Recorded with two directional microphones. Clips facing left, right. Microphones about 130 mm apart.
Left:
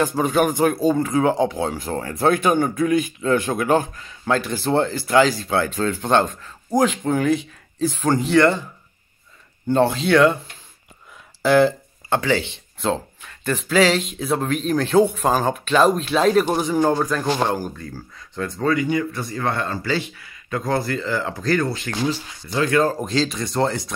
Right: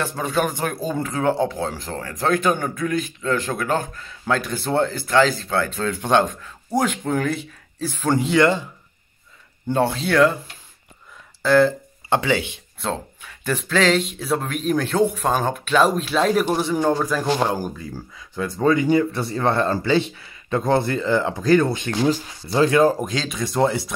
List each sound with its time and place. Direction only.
0.1 s speech: 15° left (ahead or behind)
2.0 s speech: 25° left (ahead or behind); by 6.1 s centre (ahead or behind)
6.4 s a sound: centre (ahead or behind)
6.9 s speech: 5° left (ahead or behind)
8.2 s speech: 15° right (ahead or behind)
9.7 s speech: 5° right (ahead or behind)
11.4 s speech: centre (ahead or behind)
12.1 s speech: 15° right (ahead or behind)
12.8 s speech: centre (ahead or behind)
18.7 s speech: 30° right (ahead or behind)
22.0 s speech: 35° right (ahead or behind)
22.7 s speech: 15° right (ahead or behind)
23.0 s speech: centre (ahead or behind)